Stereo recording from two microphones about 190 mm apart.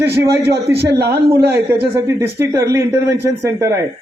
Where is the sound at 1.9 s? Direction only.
15° right (ahead or behind).